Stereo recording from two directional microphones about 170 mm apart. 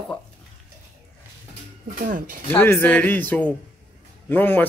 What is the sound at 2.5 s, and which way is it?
A man's voice, 10° left (ahead or behind).